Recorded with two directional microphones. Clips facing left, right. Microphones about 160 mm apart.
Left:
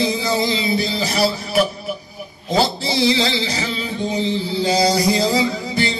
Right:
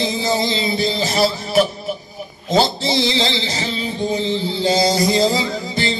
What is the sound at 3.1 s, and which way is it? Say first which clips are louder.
Music: even; 25° right (ahead or behind).